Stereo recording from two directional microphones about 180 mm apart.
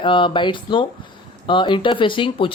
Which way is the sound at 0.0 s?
30° left (ahead or behind).